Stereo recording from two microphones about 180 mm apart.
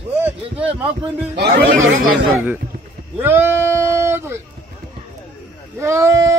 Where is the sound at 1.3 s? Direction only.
65° right (ahead or behind).